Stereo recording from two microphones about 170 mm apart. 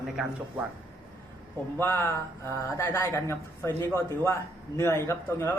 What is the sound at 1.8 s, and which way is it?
Speech, 10° left (ahead or behind).